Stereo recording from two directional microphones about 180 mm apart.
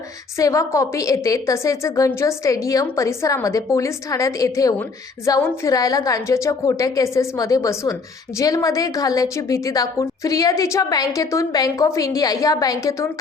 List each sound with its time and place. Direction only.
0.3 s a woman's voice: 15° left (ahead or behind)